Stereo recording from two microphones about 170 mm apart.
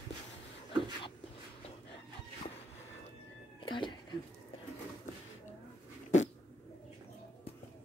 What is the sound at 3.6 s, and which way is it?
Music, 30° left (ahead or behind).